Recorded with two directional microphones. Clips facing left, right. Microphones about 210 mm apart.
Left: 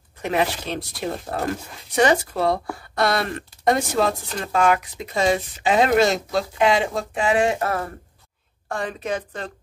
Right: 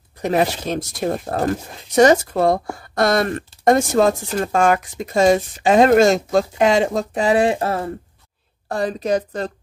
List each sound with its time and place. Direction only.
0.2 s speech: 40° right (ahead or behind)